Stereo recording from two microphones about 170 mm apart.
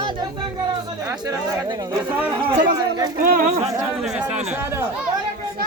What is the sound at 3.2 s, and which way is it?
Speech, 60° right (ahead or behind).